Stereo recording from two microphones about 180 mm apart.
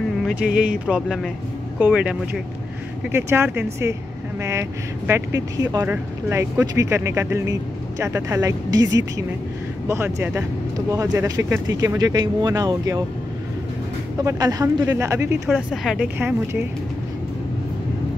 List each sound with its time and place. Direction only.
0.8 s speech: 5° right (ahead or behind); by 13.0 s 20° right (ahead or behind)
14.2 s speech: 20° right (ahead or behind)
15.4 s speech: centre (ahead or behind)